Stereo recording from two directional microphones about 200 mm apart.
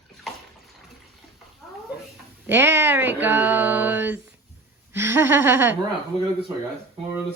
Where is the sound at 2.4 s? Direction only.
10° right (ahead or behind).